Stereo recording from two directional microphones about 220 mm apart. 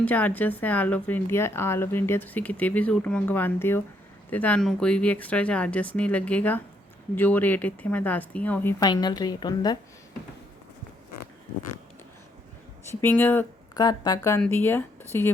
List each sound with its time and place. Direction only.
0.0 s speech: 5° left (ahead or behind)
8.8 s speech: 20° left (ahead or behind)
12.9 s speech: 10° left (ahead or behind)